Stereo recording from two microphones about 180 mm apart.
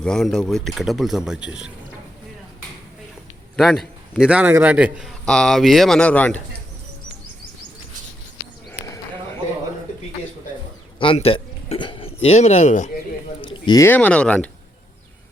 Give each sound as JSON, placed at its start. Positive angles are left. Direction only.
{"t": 0.0, "sound": "a man's voice", "side_deg": 5}
{"t": 3.6, "sound": "a man's voice", "side_deg": 0}
{"t": 11.0, "sound": "speech", "side_deg": 30}
{"t": 13.4, "sound": "a sound", "side_deg": 30}
{"t": 13.7, "sound": "speech", "side_deg": 10}